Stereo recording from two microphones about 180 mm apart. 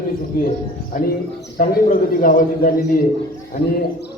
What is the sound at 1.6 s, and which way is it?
A man's voice, 50° left (ahead or behind).